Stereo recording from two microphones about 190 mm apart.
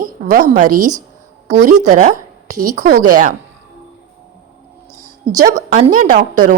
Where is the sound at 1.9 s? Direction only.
45° right (ahead or behind).